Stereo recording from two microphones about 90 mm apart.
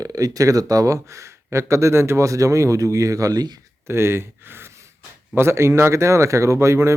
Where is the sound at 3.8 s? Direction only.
30° right (ahead or behind).